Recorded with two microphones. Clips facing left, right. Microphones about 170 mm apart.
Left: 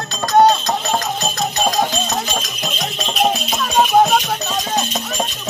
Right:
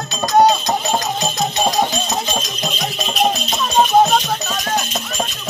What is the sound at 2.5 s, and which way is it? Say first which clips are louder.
Music: right 1 dB; centre (ahead or behind).